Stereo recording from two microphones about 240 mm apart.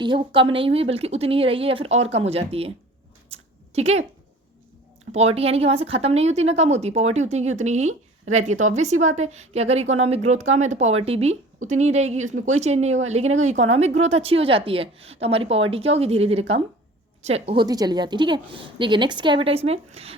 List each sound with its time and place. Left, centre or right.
0.0 s a woman's voice: centre
5.1 s a woman's voice: right